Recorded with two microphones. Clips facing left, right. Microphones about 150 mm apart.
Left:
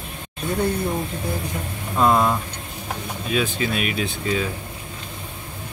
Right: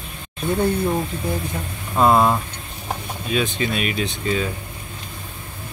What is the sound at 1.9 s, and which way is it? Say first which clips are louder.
Speech: right 2 dB; 25° right (ahead or behind).